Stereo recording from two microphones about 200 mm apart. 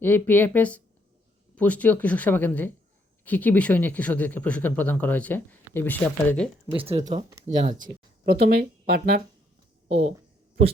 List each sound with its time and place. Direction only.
0.0 s speech: 10° left (ahead or behind)
6.7 s speech: 30° right (ahead or behind); by 9.2 s 50° right (ahead or behind)